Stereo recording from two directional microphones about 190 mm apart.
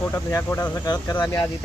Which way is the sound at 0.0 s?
15° left (ahead or behind).